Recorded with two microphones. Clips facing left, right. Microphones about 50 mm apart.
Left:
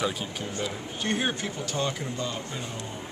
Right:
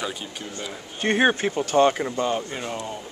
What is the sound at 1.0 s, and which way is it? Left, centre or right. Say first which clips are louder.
Speech: right 9 dB; right.